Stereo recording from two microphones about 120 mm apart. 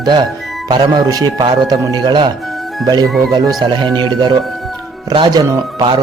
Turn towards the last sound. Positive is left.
turn(degrees=-35)  # may be behind; listen again after turning